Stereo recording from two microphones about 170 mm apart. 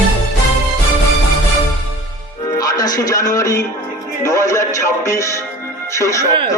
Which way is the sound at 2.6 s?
20° left (ahead or behind).